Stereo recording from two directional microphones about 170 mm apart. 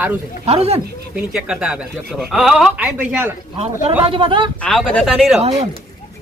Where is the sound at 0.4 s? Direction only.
35° right (ahead or behind).